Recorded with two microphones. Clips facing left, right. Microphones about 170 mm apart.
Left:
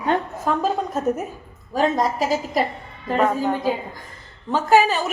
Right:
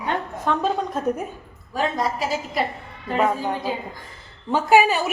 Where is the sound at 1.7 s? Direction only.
45° left (ahead or behind).